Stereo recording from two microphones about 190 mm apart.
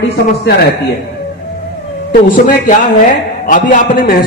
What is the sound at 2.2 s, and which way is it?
A man's voice, 45° left (ahead or behind).